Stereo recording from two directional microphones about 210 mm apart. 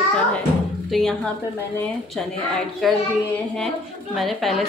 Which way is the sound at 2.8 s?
Centre (ahead or behind).